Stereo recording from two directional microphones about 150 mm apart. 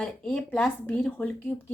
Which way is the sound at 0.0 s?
5° left (ahead or behind).